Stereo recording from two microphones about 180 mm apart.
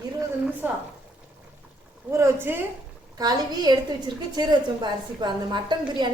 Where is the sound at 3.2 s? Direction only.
20° right (ahead or behind).